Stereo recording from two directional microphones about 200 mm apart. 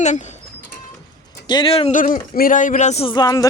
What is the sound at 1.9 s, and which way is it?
Speech, 40° left (ahead or behind).